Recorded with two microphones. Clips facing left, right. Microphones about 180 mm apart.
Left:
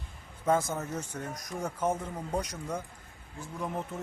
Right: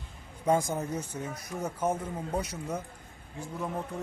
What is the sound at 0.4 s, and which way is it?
A man's voice, 15° right (ahead or behind).